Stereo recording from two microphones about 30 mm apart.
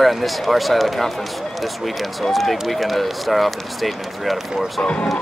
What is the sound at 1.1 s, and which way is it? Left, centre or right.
Speech, centre.